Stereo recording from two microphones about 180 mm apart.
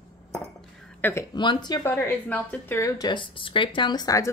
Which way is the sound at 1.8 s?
10° left (ahead or behind).